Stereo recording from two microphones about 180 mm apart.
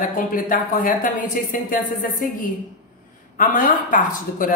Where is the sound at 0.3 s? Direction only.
50° left (ahead or behind).